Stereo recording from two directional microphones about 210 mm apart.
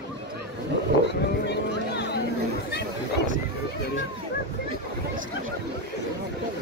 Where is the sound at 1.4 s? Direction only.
55° left (ahead or behind).